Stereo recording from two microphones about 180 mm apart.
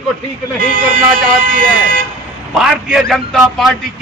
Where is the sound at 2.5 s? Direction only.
Centre (ahead or behind).